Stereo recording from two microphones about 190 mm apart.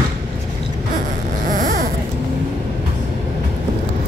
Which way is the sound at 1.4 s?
45° right (ahead or behind).